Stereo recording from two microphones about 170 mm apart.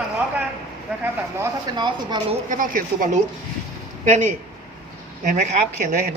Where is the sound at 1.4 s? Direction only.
25° right (ahead or behind).